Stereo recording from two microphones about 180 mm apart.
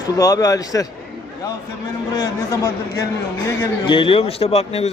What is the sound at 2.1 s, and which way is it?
A man's voice, 20° left (ahead or behind).